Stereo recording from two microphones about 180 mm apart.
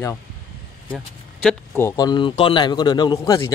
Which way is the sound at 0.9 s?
Centre (ahead or behind).